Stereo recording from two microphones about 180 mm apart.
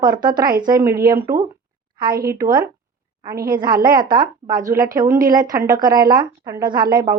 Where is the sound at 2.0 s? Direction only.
55° right (ahead or behind).